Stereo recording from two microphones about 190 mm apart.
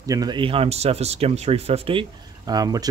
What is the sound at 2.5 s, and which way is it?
Speech, 20° right (ahead or behind).